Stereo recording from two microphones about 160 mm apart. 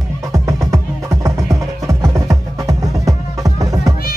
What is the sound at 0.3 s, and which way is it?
Music, 20° right (ahead or behind).